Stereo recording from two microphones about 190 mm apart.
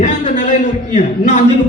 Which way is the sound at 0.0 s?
40° left (ahead or behind).